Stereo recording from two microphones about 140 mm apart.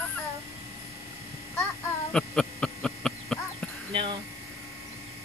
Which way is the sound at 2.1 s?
5° left (ahead or behind).